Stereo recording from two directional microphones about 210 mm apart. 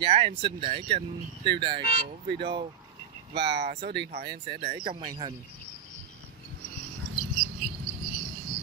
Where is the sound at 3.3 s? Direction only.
55° right (ahead or behind).